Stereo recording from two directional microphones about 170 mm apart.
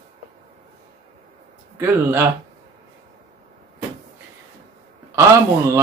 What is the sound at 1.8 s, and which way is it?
Speech, 15° right (ahead or behind).